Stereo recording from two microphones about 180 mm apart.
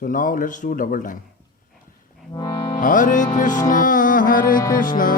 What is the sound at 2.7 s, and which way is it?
Music, 45° left (ahead or behind).